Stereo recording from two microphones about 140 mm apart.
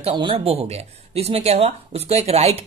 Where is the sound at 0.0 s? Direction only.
40° right (ahead or behind).